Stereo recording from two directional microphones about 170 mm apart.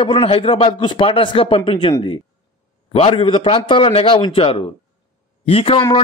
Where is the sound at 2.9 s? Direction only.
30° left (ahead or behind).